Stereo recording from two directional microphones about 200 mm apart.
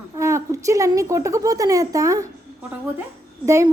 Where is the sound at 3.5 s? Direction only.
15° right (ahead or behind).